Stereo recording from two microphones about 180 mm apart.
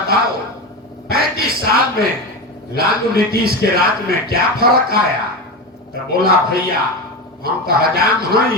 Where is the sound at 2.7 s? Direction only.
55° right (ahead or behind).